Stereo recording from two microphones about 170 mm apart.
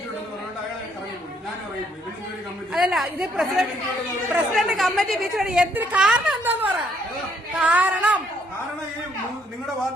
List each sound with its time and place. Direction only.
2.7 s a woman's voice: centre (ahead or behind)